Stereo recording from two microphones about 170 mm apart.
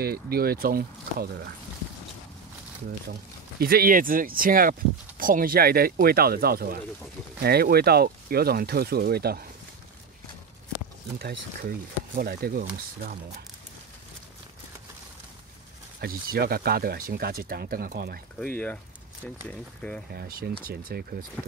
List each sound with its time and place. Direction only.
0.0 s speech: 65° right (ahead or behind)
3.1 s speech: 65° right (ahead or behind)
12.1 s speech: 65° right (ahead or behind)
16.0 s speech: 65° right (ahead or behind)
18.4 s speech: 10° left (ahead or behind)
20.1 s speech: 65° right (ahead or behind)